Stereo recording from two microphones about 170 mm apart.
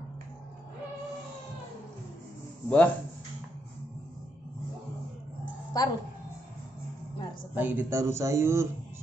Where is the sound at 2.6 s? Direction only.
10° left (ahead or behind).